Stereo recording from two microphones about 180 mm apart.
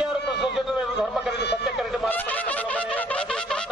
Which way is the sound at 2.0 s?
10° left (ahead or behind).